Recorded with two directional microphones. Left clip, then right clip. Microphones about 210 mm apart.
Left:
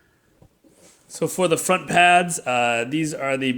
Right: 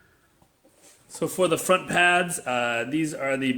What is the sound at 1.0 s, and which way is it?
Speech, 35° left (ahead or behind).